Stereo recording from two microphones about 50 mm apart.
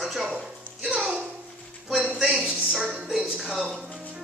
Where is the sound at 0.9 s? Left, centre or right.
Centre.